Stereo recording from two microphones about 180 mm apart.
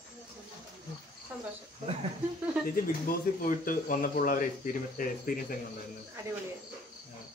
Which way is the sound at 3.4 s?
50° left (ahead or behind).